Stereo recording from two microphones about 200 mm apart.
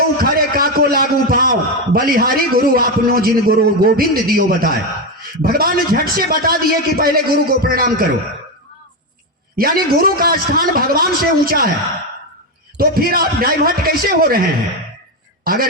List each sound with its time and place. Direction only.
0.2 s a man's voice: 50° right (ahead or behind)
9.6 s a man's voice: 50° right (ahead or behind)
12.7 s a man's voice: 50° right (ahead or behind)